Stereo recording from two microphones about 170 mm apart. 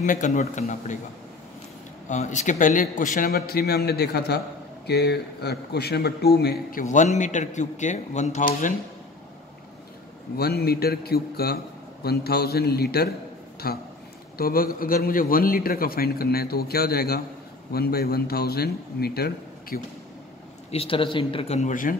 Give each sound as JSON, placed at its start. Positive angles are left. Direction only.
{"t": 0.0, "sound": "speech", "side_deg": 50}
{"t": 2.0, "sound": "a man's voice", "side_deg": 45}
{"t": 10.3, "sound": "a man's voice", "side_deg": 65}
{"t": 20.7, "sound": "speech", "side_deg": 35}